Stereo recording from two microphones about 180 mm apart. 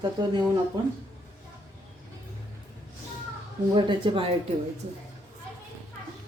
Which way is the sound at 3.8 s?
30° right (ahead or behind).